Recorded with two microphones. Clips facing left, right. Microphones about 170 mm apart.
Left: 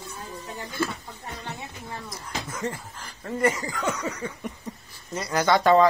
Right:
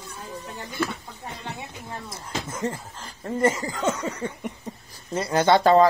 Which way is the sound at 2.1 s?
25° right (ahead or behind).